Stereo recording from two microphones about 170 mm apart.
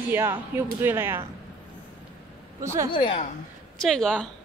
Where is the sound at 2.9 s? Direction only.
30° left (ahead or behind).